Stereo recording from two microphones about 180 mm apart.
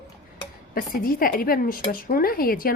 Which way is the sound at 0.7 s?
50° left (ahead or behind).